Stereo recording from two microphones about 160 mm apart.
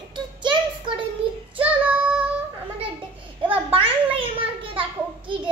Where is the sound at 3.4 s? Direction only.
35° right (ahead or behind).